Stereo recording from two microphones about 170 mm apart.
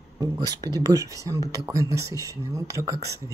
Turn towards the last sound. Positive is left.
turn(degrees=-20)  # may be behind; listen again after turning